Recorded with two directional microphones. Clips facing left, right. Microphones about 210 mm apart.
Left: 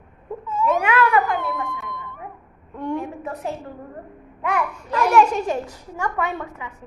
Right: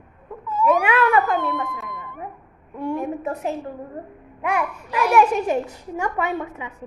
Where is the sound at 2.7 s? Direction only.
10° right (ahead or behind).